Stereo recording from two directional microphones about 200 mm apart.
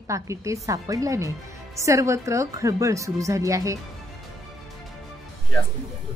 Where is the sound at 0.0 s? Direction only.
15° right (ahead or behind).